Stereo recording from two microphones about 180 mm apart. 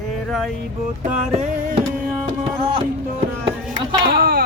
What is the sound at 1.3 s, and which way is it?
Music, 40° right (ahead or behind).